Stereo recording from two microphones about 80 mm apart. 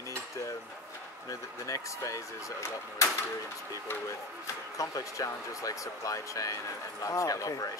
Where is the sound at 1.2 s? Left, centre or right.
Left.